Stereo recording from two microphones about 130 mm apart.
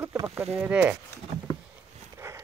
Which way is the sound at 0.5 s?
10° right (ahead or behind).